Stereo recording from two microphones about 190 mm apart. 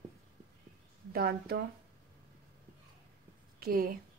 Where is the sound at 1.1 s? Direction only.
55° right (ahead or behind).